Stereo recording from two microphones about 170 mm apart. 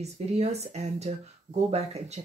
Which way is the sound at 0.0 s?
40° right (ahead or behind).